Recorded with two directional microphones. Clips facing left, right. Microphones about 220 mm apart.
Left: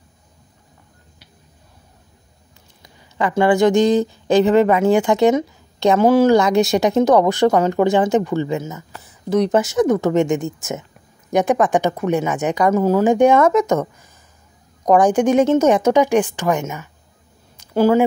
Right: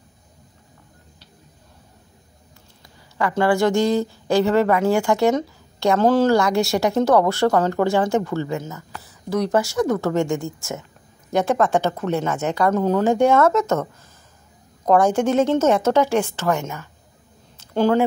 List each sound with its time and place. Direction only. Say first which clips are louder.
3.2 s speech: left 3 dB; 20° left (ahead or behind)
14.9 s speech: left 3 dB; 15° left (ahead or behind)
17.6 s a sound: left 3 dB; 10° left (ahead or behind)